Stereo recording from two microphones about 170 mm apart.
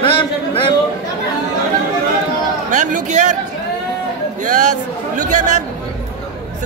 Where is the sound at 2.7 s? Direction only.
50° right (ahead or behind).